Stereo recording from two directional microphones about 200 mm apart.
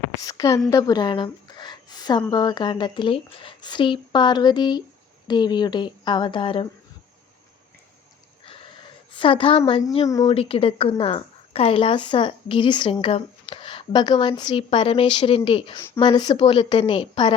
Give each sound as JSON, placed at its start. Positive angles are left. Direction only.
{"t": 0.2, "sound": "a woman's voice", "side_deg": 20}
{"t": 0.7, "sound": "a sound", "side_deg": 20}
{"t": 2.3, "sound": "a woman's voice", "side_deg": 20}
{"t": 9.1, "sound": "a woman's voice", "side_deg": 25}